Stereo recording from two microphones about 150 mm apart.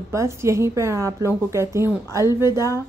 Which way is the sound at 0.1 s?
20° right (ahead or behind).